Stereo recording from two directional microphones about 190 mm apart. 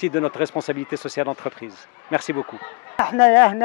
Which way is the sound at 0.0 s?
15° left (ahead or behind).